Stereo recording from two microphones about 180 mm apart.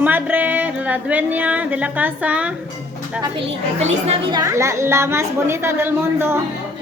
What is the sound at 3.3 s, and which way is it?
A woman's voice, 30° right (ahead or behind).